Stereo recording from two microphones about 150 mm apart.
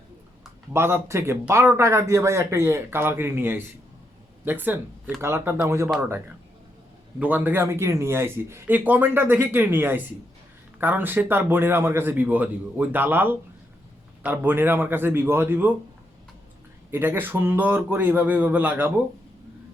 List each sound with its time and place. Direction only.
0.7 s speech: 15° right (ahead or behind)
16.9 s speech: 15° right (ahead or behind)